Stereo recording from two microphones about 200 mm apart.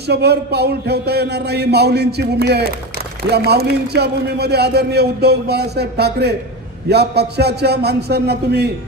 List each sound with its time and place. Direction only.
0.1 s a man's voice: 55° right (ahead or behind)